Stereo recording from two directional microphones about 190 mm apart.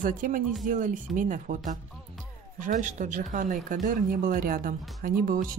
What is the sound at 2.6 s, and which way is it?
Speech, 40° right (ahead or behind).